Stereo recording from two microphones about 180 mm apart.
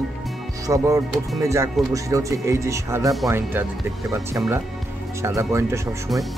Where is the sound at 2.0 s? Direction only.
20° right (ahead or behind).